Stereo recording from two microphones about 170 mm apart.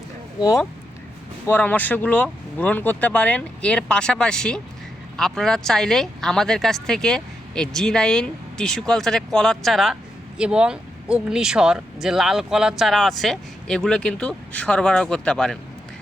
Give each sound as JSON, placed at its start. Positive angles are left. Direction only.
{"t": 0.3, "sound": "speech", "side_deg": 20}